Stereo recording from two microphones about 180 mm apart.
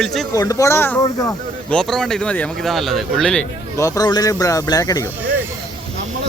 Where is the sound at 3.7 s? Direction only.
15° left (ahead or behind).